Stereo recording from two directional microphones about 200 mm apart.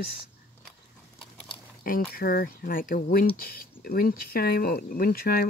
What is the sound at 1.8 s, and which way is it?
Speech, 45° left (ahead or behind).